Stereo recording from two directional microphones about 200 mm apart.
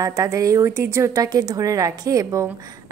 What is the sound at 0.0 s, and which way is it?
A woman's voice, 15° right (ahead or behind).